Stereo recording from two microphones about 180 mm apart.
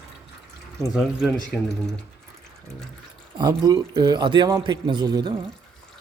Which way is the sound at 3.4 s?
25° right (ahead or behind).